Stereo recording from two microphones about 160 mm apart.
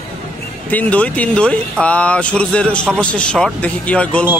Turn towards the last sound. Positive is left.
turn(degrees=10)  # may be behind; listen again after turning